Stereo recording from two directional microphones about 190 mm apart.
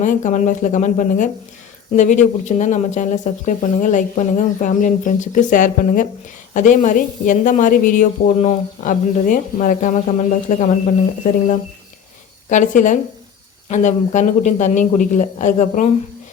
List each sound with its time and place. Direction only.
0.0 s a woman's voice: 40° left (ahead or behind)